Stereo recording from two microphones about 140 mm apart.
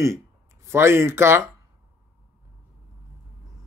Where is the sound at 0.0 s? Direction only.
20° right (ahead or behind).